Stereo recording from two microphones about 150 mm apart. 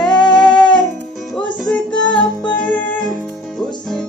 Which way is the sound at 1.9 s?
30° left (ahead or behind).